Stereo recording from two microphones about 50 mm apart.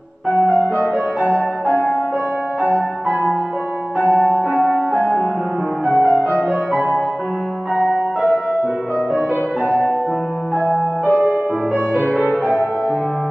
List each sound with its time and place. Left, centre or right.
0.4 s music: right
4.9 s music: centre
5.9 s music: right
7.7 s music: centre
9.7 s music: left
11.1 s music: right